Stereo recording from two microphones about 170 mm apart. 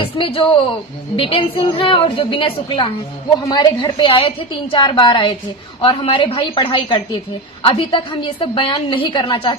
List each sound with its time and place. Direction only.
0.0 s a woman's voice: 35° left (ahead or behind)